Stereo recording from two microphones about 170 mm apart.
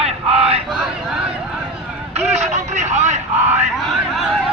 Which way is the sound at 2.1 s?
40° right (ahead or behind).